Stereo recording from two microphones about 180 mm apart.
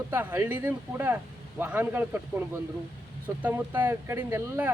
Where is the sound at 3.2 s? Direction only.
10° right (ahead or behind).